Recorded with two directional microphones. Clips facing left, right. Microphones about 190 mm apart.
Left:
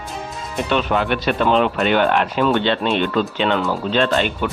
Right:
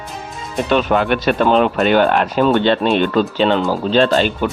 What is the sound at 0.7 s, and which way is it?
Speech, 45° right (ahead or behind).